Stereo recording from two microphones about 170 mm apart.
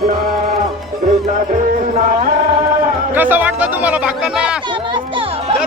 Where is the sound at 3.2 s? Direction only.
10° right (ahead or behind).